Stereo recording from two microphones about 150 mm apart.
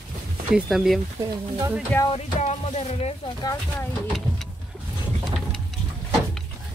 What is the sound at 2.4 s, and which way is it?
Music, 45° left (ahead or behind).